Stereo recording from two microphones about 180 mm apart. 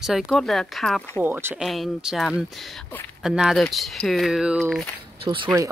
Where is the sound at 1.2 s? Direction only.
10° right (ahead or behind).